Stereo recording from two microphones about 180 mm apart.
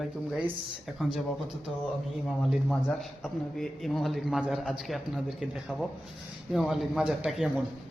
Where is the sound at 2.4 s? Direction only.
Centre (ahead or behind).